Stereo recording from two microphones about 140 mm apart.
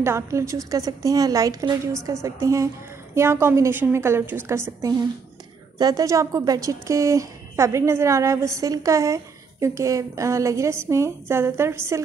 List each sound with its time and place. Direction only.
0.0 s a woman's voice: 20° right (ahead or behind)